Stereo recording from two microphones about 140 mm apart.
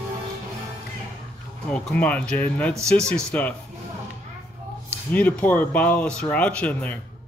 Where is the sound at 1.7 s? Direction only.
10° left (ahead or behind).